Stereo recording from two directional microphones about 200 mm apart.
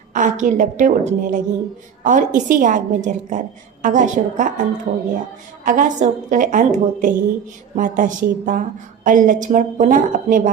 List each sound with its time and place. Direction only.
0.1 s a woman's voice: 40° right (ahead or behind)